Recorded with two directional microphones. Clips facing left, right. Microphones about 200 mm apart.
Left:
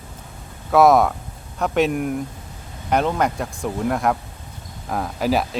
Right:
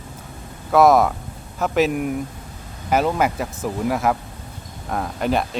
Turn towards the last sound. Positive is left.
turn(degrees=0)  # may be behind; listen again after turning